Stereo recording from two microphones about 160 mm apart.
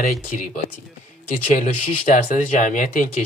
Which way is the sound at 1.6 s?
55° left (ahead or behind).